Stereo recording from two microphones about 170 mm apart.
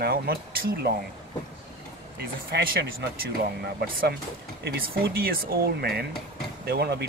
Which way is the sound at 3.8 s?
65° right (ahead or behind).